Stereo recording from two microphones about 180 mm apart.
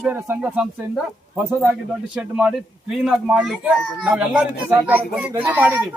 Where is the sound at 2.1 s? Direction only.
5° right (ahead or behind).